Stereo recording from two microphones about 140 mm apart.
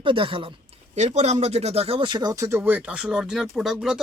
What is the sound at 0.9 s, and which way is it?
Speech, 55° right (ahead or behind).